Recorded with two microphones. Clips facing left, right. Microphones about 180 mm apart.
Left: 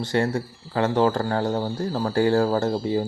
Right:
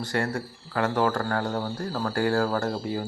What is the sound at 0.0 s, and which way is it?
Speech, 20° left (ahead or behind).